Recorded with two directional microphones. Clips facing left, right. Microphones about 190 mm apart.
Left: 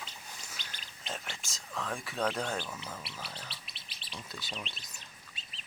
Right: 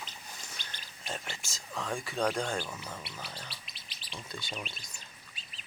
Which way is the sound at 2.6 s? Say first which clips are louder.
Right 2 dB; 10° right (ahead or behind).